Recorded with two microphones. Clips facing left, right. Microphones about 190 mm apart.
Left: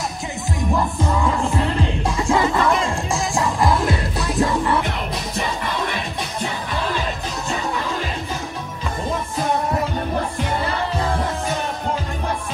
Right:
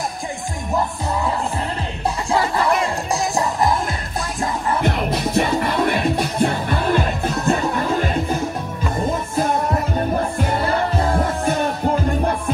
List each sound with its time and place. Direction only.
5.3 s music: 60° right (ahead or behind)